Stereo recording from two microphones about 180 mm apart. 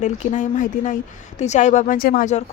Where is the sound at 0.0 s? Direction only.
40° left (ahead or behind).